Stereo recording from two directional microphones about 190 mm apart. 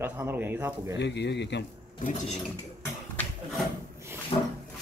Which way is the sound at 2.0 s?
45° left (ahead or behind).